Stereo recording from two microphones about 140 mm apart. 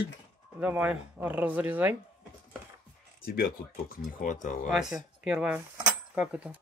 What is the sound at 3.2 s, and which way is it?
Speech, 90° left.